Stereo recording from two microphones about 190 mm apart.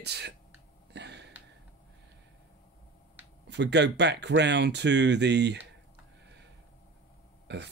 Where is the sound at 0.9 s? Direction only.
65° right (ahead or behind).